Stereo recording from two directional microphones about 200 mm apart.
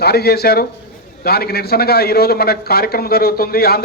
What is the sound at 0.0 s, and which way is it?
A man's voice, 55° left (ahead or behind).